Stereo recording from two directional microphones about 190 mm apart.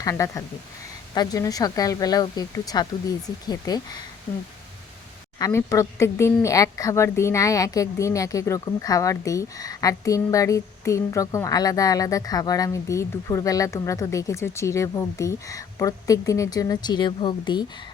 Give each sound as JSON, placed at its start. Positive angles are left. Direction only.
{"t": 0.0, "sound": "speech", "side_deg": 15}
{"t": 5.4, "sound": "speech", "side_deg": 15}